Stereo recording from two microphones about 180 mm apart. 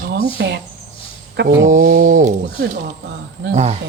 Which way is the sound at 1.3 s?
70° right (ahead or behind).